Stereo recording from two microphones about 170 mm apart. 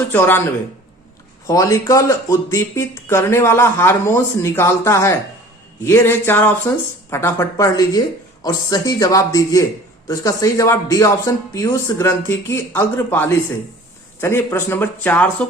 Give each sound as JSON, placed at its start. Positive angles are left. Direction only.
{"t": 0.1, "sound": "speech", "side_deg": 10}